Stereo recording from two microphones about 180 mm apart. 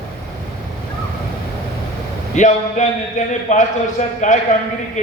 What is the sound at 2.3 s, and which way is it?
A man's voice, 45° left (ahead or behind).